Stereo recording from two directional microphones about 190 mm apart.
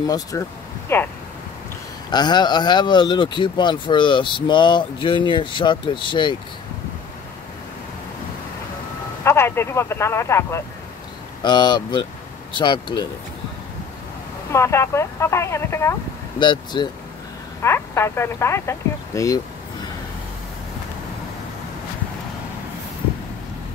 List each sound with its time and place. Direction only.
0.0 s speech: 20° left (ahead or behind)
2.0 s speech: 20° left (ahead or behind)
9.2 s speech: 15° left (ahead or behind)
14.5 s speech: 15° left (ahead or behind)
17.6 s speech: 15° left (ahead or behind)